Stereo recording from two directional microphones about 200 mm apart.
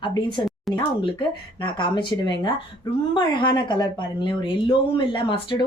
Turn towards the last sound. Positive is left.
turn(degrees=25)  # may be behind; listen again after turning